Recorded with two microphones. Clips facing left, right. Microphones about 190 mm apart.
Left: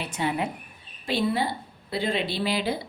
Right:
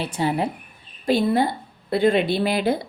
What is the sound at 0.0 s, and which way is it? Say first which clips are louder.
Speech: right 5 dB; 35° right (ahead or behind).